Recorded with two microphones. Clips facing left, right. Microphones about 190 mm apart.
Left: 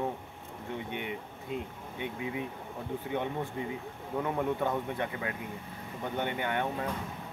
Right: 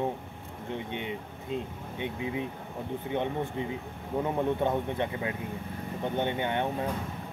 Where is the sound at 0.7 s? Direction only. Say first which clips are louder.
Right 2 dB; 20° right (ahead or behind).